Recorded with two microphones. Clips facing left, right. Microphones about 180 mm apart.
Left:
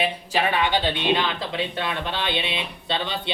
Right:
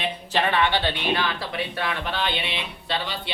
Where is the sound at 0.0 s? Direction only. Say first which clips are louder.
Left 1 dB; 10° left (ahead or behind).